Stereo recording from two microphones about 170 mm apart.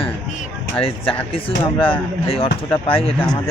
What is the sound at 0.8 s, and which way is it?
Speech, 35° left (ahead or behind).